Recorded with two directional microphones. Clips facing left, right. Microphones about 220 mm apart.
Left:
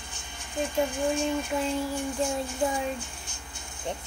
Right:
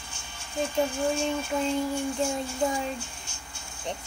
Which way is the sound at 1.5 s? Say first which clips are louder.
Right 1 dB; centre (ahead or behind).